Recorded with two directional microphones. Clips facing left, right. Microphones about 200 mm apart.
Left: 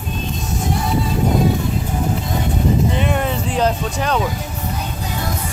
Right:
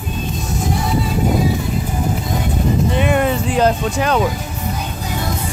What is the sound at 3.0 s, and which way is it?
Speech, 5° right (ahead or behind).